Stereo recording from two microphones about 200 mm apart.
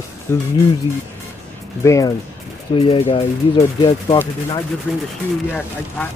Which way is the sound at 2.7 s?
30° left (ahead or behind).